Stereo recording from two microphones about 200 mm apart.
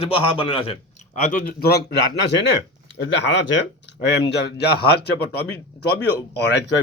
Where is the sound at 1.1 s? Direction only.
40° left (ahead or behind).